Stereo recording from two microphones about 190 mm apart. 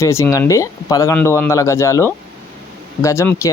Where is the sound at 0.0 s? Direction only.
15° left (ahead or behind).